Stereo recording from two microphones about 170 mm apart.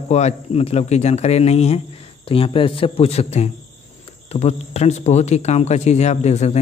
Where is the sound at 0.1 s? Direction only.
40° left (ahead or behind).